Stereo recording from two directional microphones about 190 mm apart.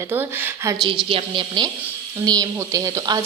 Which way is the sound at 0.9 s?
30° right (ahead or behind).